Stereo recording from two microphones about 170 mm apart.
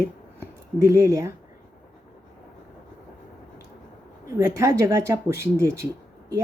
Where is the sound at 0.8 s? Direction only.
15° right (ahead or behind).